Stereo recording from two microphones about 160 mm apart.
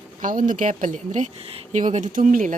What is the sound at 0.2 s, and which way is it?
Speech, 55° right (ahead or behind).